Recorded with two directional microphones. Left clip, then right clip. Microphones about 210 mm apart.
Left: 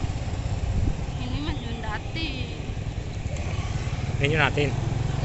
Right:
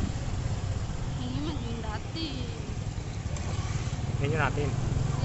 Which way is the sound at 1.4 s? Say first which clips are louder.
Left 3 dB; 5° right (ahead or behind).